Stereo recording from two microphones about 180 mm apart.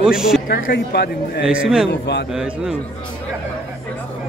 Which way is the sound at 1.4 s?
5° right (ahead or behind).